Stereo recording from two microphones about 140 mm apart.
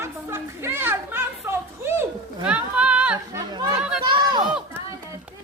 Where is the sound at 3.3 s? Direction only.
25° right (ahead or behind).